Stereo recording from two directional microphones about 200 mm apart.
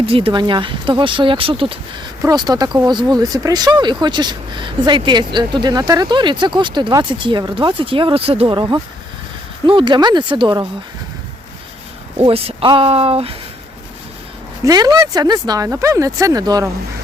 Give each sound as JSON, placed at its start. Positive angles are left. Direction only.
{"t": 0.0, "sound": "speech", "side_deg": -25}
{"t": 12.1, "sound": "speech", "side_deg": -30}
{"t": 14.6, "sound": "speech", "side_deg": -20}